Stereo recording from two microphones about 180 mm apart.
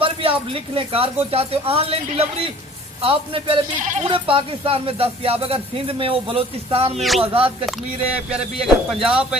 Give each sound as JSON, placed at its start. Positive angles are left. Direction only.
{"t": 0.0, "sound": "a man's voice", "side_deg": -30}
{"t": 3.8, "sound": "speech", "side_deg": -45}
{"t": 4.1, "sound": "speech", "side_deg": -30}
{"t": 8.3, "sound": "speech", "side_deg": -5}